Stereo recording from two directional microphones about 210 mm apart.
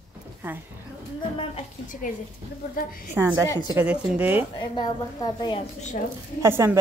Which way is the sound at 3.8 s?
10° right (ahead or behind).